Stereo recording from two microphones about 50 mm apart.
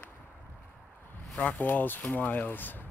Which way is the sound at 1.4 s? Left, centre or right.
Left.